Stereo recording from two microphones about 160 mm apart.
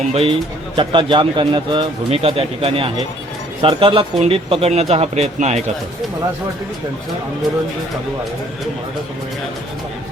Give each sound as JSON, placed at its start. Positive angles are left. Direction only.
{"t": 0.1, "sound": "speech", "side_deg": -35}